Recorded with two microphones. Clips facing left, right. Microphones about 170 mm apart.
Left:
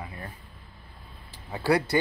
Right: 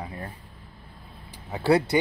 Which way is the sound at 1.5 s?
20° right (ahead or behind).